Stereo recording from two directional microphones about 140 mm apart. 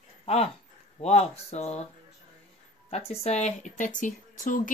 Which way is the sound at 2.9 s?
45° left (ahead or behind).